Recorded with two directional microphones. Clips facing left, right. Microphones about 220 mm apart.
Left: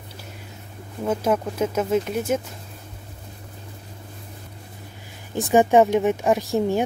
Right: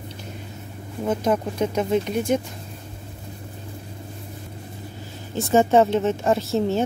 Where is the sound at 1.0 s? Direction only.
5° left (ahead or behind).